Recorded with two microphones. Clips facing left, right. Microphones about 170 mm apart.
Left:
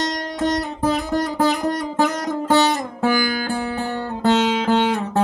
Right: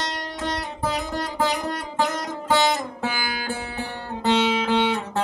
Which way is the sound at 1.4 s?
40° left (ahead or behind).